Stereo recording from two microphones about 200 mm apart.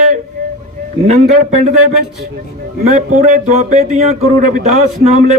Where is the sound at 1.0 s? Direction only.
35° right (ahead or behind).